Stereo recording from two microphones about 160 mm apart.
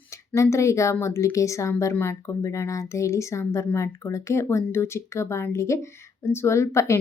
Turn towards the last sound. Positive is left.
turn(degrees=15)  # may be behind; listen again after turning